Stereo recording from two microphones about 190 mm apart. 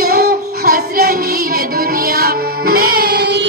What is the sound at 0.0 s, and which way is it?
Child singing, 50° right (ahead or behind).